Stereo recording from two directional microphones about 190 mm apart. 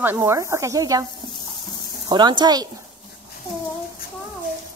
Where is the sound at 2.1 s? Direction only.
25° right (ahead or behind).